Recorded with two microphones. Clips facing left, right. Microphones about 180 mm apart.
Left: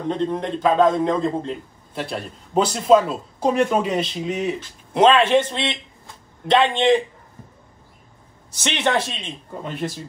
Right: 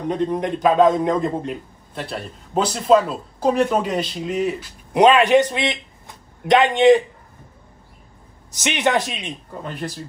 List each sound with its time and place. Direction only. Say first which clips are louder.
0.1 s a man's voice: right 2 dB; 15° right (ahead or behind)
2.0 s speech: left 1 dB; centre (ahead or behind)
4.9 s a man's voice: right 2 dB; 15° right (ahead or behind)
8.6 s a man's voice: right 2 dB; 15° right (ahead or behind)
9.6 s speech: left 2 dB; centre (ahead or behind)